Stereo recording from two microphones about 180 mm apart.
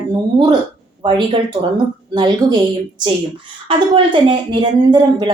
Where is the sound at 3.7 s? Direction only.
25° right (ahead or behind).